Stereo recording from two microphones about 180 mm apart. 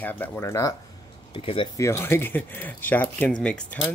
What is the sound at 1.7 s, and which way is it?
Speech, 15° left (ahead or behind).